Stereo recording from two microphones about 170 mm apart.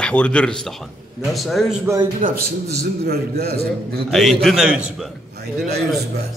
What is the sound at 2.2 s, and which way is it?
A man's voice, 65° right (ahead or behind).